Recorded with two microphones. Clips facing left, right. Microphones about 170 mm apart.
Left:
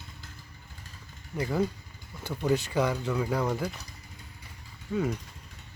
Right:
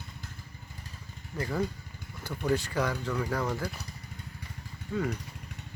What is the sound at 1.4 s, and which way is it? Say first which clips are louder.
Speech: left 3 dB; 15° left (ahead or behind).